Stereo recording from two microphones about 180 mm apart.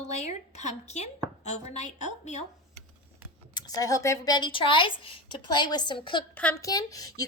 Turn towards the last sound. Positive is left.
turn(degrees=20)  # may be behind; listen again after turning